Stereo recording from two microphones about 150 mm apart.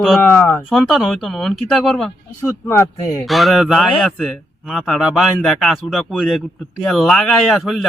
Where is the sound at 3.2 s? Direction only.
Centre (ahead or behind).